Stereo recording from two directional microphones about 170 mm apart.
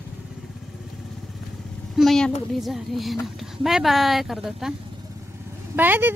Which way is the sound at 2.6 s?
Centre (ahead or behind).